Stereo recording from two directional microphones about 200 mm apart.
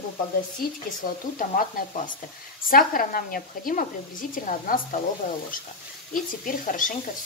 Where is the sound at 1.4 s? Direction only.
40° left (ahead or behind).